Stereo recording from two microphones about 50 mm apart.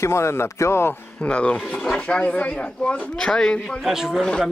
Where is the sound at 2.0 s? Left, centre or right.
Left.